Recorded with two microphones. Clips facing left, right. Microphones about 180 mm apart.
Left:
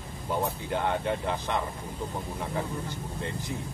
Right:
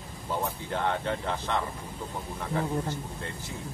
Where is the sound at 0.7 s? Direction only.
15° left (ahead or behind).